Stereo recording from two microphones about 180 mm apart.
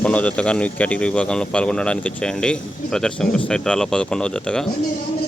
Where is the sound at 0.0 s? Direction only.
5° left (ahead or behind).